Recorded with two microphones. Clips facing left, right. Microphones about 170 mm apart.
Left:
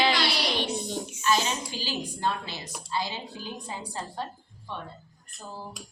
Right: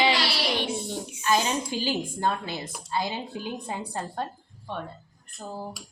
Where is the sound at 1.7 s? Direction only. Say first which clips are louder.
Right 5 dB; 50° right (ahead or behind).